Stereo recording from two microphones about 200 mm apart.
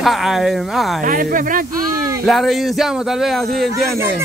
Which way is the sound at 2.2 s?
Centre (ahead or behind).